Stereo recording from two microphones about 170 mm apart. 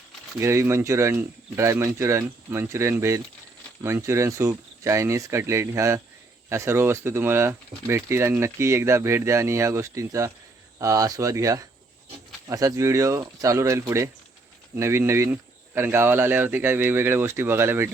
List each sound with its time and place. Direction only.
0.3 s speech: 15° right (ahead or behind)